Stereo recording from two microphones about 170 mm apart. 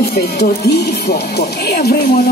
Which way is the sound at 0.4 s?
75° left (ahead or behind).